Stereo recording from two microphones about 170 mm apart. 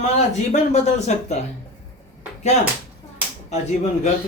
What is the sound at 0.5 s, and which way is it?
Speech, 40° left (ahead or behind).